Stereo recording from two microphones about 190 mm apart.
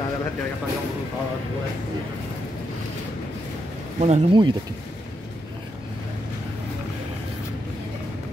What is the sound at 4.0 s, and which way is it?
Speech, 30° right (ahead or behind).